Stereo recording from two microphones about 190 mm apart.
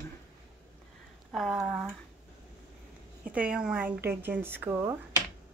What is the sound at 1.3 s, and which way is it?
Speech, centre (ahead or behind).